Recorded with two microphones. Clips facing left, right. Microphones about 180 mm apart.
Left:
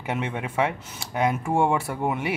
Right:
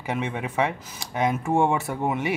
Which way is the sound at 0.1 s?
5° left (ahead or behind).